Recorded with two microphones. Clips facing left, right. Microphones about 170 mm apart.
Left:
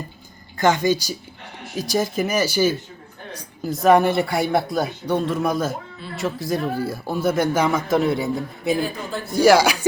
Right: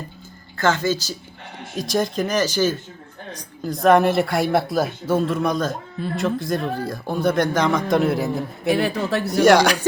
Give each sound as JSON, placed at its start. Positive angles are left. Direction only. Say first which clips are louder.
{"t": 0.5, "sound": "speech", "louder": "left 2 dB", "side_deg": 15}
{"t": 1.7, "sound": "speech", "louder": "even", "side_deg": 0}
{"t": 8.7, "sound": "a man's voice", "louder": "right 4 dB", "side_deg": -75}
{"t": 9.4, "sound": "speech", "louder": "even", "side_deg": 5}